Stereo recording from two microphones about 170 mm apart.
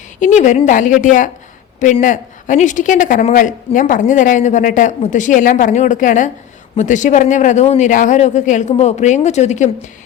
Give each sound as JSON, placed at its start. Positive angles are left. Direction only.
{"t": 0.2, "sound": "speech", "side_deg": 45}